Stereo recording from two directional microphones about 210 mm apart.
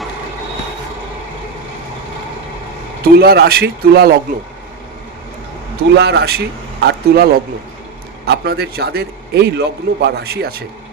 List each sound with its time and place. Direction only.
3.0 s a man's voice: 50° right (ahead or behind)
5.9 s a man's voice: 50° right (ahead or behind)